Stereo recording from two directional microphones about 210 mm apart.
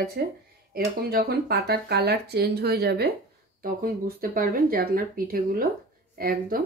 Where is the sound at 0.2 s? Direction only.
45° right (ahead or behind).